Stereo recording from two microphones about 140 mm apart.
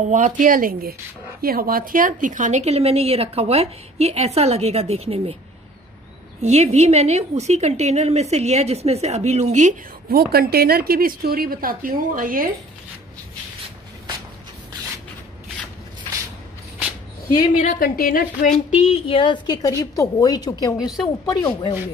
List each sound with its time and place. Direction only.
0.1 s a woman's voice: 65° right (ahead or behind); by 5.4 s 45° right (ahead or behind)
6.4 s a woman's voice: 50° right (ahead or behind); by 12.4 s 90° right
17.6 s a woman's voice: 75° left (ahead or behind)
18.9 s a woman's voice: 35° left (ahead or behind)